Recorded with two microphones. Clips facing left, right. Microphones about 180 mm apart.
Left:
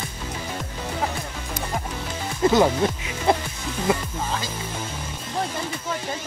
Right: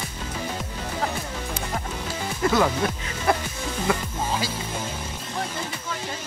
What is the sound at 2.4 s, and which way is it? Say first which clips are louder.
Speech: left 4 dB; 25° left (ahead or behind).